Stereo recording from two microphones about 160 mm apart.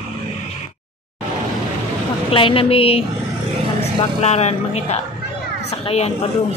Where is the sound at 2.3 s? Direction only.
35° left (ahead or behind).